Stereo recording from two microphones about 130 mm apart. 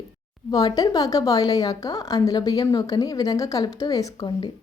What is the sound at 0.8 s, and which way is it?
A woman's voice, 30° left (ahead or behind).